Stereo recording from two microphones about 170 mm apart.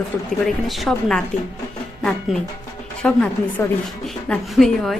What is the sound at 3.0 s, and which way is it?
A woman's voice, 5° left (ahead or behind).